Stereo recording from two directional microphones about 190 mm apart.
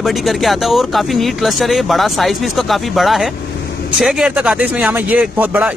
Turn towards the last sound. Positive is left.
turn(degrees=-10)  # may be behind; listen again after turning